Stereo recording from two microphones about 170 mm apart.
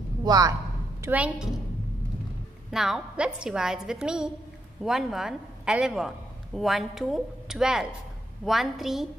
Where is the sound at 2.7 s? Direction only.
5° right (ahead or behind).